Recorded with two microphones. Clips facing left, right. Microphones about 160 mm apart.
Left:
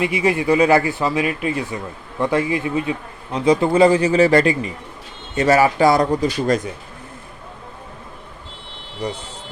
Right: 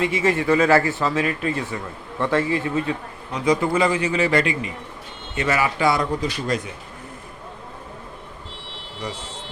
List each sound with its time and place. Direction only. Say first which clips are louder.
0.0 s speech: left 2 dB; 15° left (ahead or behind)
3.3 s a man's voice: left 5 dB; 30° left (ahead or behind)